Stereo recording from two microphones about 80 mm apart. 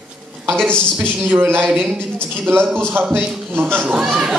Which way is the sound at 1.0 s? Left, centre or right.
Right.